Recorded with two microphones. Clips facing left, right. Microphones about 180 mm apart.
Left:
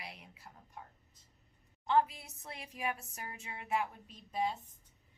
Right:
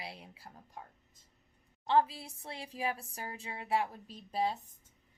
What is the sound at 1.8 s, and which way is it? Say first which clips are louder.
A woman's voice: right 2 dB; 30° right (ahead or behind).